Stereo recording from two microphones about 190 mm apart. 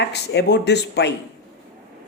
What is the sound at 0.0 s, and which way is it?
Speech, 60° left (ahead or behind).